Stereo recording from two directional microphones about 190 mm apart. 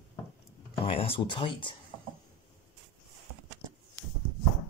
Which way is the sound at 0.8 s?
30° left (ahead or behind).